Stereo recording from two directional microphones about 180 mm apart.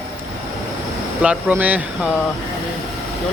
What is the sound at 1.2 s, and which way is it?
Speech, 10° right (ahead or behind).